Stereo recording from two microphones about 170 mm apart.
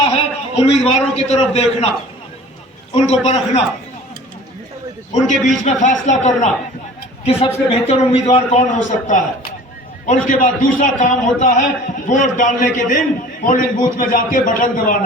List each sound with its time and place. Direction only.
0.0 s a man's voice: 40° left (ahead or behind)
2.9 s a man's voice: 40° left (ahead or behind)
5.1 s a man's voice: 45° left (ahead or behind)